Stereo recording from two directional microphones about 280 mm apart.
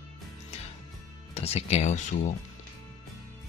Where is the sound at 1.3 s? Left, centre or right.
Left.